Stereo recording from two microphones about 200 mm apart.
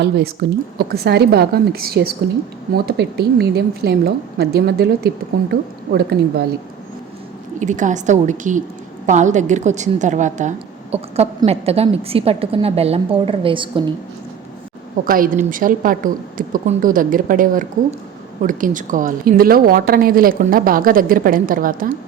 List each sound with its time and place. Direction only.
0.4 s a woman's voice: 55° right (ahead or behind)
7.6 s a woman's voice: 40° right (ahead or behind)
15.0 s a woman's voice: 45° right (ahead or behind)